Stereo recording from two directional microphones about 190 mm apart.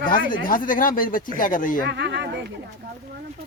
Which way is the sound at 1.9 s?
65° right (ahead or behind).